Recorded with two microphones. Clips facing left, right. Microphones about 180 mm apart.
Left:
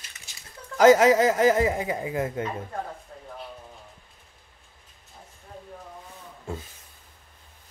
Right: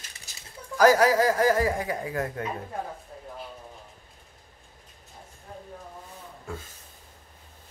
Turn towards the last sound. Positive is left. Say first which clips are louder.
# left 3 dB
turn(degrees=25)  # may be behind; listen again after turning